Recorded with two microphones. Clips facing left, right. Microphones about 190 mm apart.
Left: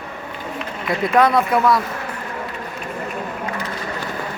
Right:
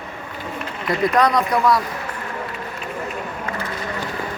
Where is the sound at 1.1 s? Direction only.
5° left (ahead or behind).